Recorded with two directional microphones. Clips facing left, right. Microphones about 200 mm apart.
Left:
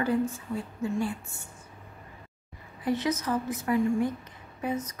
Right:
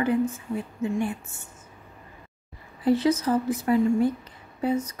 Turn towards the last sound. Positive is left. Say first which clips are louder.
# right 6 dB
turn(degrees=-30)  # may be behind; listen again after turning